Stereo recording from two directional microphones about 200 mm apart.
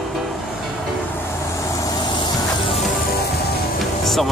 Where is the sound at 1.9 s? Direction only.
20° left (ahead or behind).